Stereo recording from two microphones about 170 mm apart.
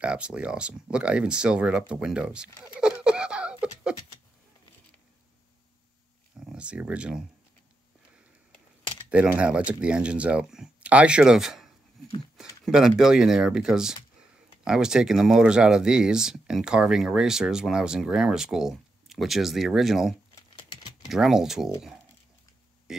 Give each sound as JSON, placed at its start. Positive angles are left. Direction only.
{"t": 0.0, "sound": "speech", "side_deg": -5}
{"t": 6.5, "sound": "speech", "side_deg": -5}
{"t": 9.1, "sound": "speech", "side_deg": -5}
{"t": 20.5, "sound": "a sound", "side_deg": 30}
{"t": 21.1, "sound": "speech", "side_deg": 0}
{"t": 22.9, "sound": "a sound", "side_deg": -5}